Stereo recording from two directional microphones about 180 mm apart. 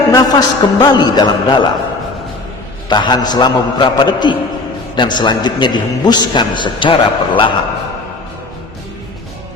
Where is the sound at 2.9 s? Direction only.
25° left (ahead or behind).